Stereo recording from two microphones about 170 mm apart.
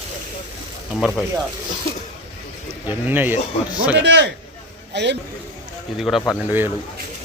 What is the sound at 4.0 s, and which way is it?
A man's voice, 90° right.